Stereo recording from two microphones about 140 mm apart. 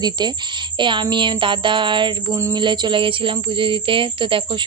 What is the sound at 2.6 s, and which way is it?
Music, 35° right (ahead or behind).